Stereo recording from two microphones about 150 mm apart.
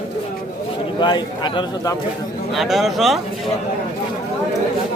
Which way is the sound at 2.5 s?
Centre (ahead or behind).